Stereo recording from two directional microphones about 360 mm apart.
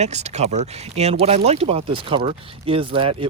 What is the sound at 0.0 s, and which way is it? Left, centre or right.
Speech, centre.